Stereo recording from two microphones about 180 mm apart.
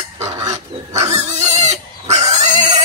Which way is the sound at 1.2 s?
40° right (ahead or behind).